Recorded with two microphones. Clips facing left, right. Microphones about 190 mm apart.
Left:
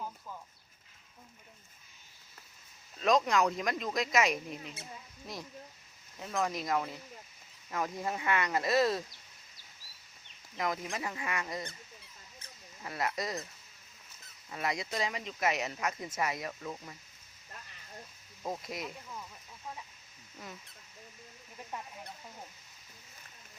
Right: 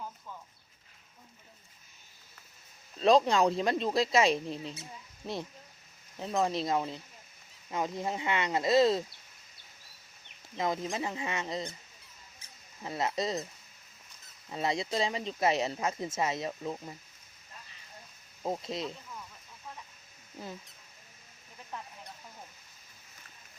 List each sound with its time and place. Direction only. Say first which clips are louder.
3.0 s speech: right 4 dB; 30° right (ahead or behind)
6.1 s speech: right 4 dB; 30° right (ahead or behind)
10.6 s speech: right 3 dB; 25° right (ahead or behind)
12.8 s speech: right 3 dB; 25° right (ahead or behind)
14.5 s speech: right 4 dB; 25° right (ahead or behind)
18.4 s speech: right 4 dB; 25° right (ahead or behind)
20.4 s speech: right 5 dB; 30° right (ahead or behind)
21.7 s speech: even; 10° left (ahead or behind)